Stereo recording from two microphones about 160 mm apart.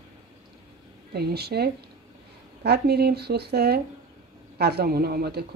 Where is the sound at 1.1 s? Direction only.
80° right.